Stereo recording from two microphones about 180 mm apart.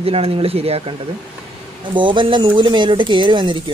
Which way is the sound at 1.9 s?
25° right (ahead or behind).